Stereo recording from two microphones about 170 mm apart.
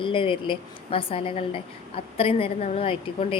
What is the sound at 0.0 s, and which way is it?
A woman's voice, 30° left (ahead or behind).